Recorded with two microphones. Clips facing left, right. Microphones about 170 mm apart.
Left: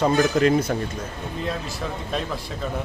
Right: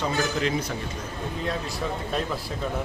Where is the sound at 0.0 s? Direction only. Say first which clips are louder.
Left 7 dB; 50° left (ahead or behind).